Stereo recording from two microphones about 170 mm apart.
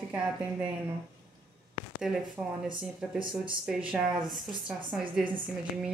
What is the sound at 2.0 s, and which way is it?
Speech, 5° right (ahead or behind).